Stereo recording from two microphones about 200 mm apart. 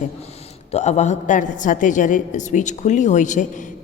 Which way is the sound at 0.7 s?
35° left (ahead or behind).